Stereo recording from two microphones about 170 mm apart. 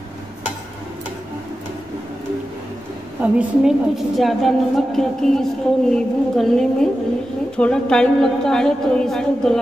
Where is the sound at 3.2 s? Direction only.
5° right (ahead or behind).